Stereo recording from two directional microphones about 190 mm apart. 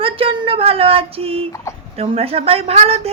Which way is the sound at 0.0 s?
30° right (ahead or behind).